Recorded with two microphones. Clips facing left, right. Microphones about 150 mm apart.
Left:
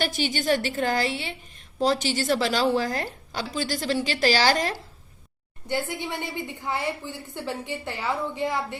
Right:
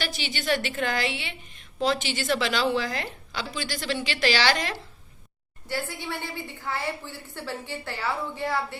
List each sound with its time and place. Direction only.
0.0 s a woman's voice: 45° left (ahead or behind)
5.6 s a woman's voice: 20° left (ahead or behind)